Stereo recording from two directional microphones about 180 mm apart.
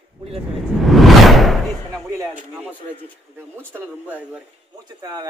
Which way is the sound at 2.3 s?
10° right (ahead or behind).